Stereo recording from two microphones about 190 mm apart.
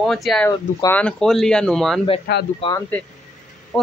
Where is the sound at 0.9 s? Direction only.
5° left (ahead or behind).